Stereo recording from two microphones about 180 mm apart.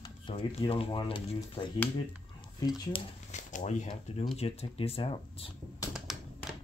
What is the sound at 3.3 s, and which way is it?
Speech, 40° left (ahead or behind).